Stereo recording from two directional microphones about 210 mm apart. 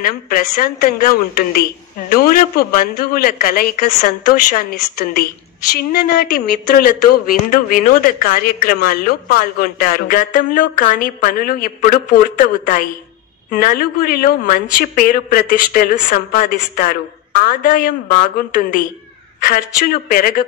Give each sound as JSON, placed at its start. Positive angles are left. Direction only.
{"t": 0.0, "sound": "a woman's voice", "side_deg": 45}